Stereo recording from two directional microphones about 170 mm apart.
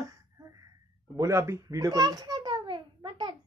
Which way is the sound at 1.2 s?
15° right (ahead or behind).